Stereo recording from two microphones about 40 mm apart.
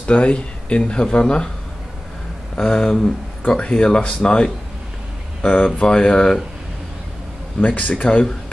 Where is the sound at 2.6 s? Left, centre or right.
Centre.